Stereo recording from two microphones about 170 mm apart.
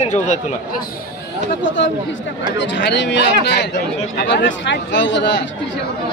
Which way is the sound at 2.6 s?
90° left.